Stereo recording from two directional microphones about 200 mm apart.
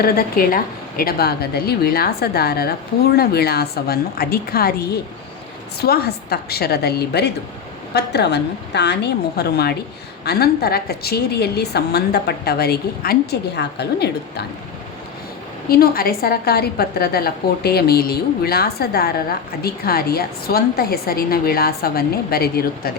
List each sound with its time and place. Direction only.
0.0 s a woman's voice: 45° left (ahead or behind)
15.7 s a woman's voice: 50° left (ahead or behind)